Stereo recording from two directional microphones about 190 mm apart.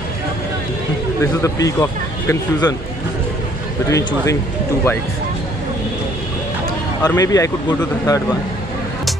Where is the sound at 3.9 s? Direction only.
15° left (ahead or behind).